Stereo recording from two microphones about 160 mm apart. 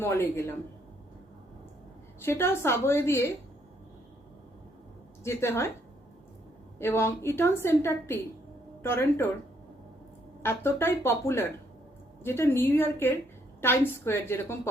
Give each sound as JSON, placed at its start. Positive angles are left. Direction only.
{"t": 0.0, "sound": "a woman's voice", "side_deg": 15}
{"t": 2.2, "sound": "a woman's voice", "side_deg": 15}
{"t": 5.2, "sound": "a woman's voice", "side_deg": 15}
{"t": 6.7, "sound": "a woman's voice", "side_deg": 15}
{"t": 10.4, "sound": "a woman's voice", "side_deg": 15}